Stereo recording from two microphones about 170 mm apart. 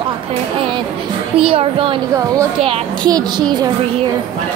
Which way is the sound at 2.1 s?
20° right (ahead or behind).